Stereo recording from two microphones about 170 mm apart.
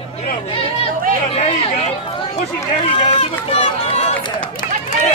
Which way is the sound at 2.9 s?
30° left (ahead or behind).